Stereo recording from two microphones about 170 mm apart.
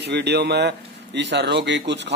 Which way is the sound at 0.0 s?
80° right.